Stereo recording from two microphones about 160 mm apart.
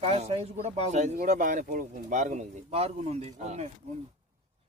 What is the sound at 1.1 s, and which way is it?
Speech, 55° right (ahead or behind).